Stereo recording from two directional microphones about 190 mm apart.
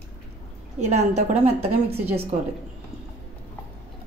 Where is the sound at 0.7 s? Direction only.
35° right (ahead or behind).